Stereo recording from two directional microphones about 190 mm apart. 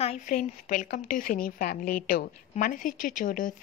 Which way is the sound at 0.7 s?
50° left (ahead or behind).